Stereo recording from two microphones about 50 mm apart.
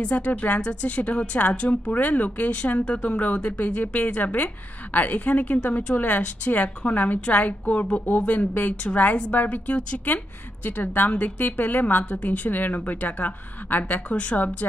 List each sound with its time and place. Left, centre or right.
0.1 s a woman's voice: left
10.0 s a woman's voice: left